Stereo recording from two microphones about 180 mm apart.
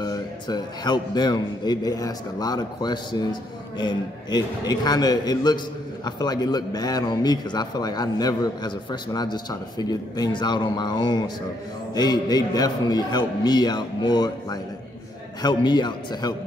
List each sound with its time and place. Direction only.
0.0 s a man's voice: 20° left (ahead or behind)